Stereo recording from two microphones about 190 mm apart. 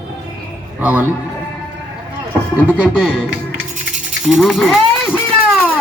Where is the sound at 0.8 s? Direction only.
10° right (ahead or behind).